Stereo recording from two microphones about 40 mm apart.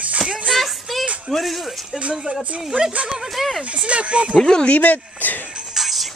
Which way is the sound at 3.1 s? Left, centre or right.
Centre.